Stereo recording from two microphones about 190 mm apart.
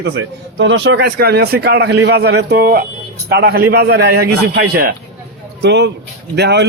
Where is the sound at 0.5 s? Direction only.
70° right (ahead or behind).